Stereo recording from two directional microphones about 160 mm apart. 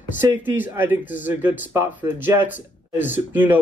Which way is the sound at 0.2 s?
15° right (ahead or behind).